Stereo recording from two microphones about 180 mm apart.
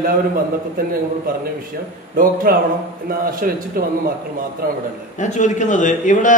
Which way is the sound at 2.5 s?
55° right (ahead or behind).